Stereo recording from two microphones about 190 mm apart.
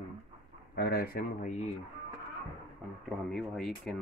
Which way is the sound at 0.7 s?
55° left (ahead or behind).